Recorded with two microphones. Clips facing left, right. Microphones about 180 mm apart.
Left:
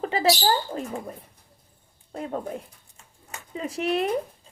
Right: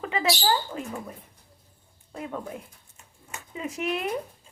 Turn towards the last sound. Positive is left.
turn(degrees=35)  # may be behind; listen again after turning